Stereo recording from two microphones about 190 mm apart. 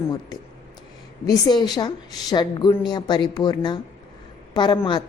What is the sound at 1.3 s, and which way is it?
A woman's voice, 20° left (ahead or behind).